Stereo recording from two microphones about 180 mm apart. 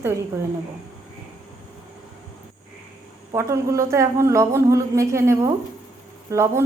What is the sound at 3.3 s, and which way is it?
A woman's voice, 15° right (ahead or behind).